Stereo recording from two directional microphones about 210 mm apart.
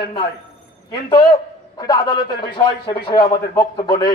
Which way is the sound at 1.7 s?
20° left (ahead or behind).